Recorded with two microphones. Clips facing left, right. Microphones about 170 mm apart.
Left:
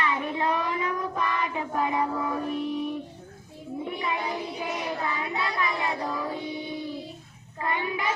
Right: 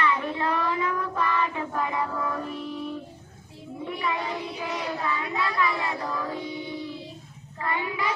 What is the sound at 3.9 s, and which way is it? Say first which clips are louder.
Child singing: right 2 dB; 25° left (ahead or behind).